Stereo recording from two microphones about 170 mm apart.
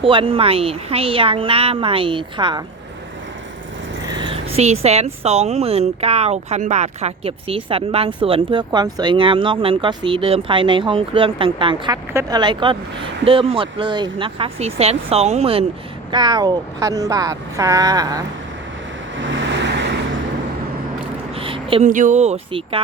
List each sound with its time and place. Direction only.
0.0 s speech: 30° right (ahead or behind)
4.1 s speech: 30° right (ahead or behind)
16.1 s speech: 25° right (ahead or behind)
19.1 s vehicle: 90° right
21.3 s a sound: 30° right (ahead or behind)
21.8 s speech: 50° right (ahead or behind)